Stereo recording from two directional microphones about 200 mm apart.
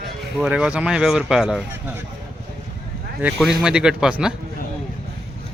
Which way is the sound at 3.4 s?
5° right (ahead or behind).